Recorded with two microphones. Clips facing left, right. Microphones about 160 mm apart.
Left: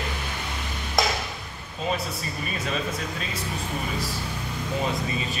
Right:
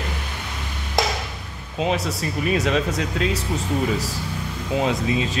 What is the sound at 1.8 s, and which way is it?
A man's voice, 85° right.